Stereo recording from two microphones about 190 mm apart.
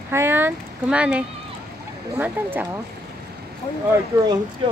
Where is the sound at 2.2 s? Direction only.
10° right (ahead or behind).